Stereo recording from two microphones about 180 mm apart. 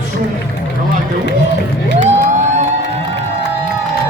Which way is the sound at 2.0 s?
40° right (ahead or behind).